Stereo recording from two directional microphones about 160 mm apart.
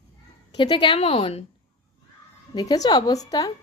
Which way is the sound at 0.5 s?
30° left (ahead or behind).